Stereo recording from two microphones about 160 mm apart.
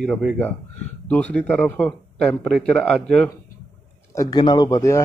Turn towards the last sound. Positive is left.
turn(degrees=20)  # may be behind; listen again after turning